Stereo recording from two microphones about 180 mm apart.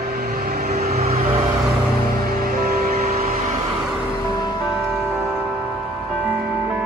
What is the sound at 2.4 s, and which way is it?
Music, 55° right (ahead or behind).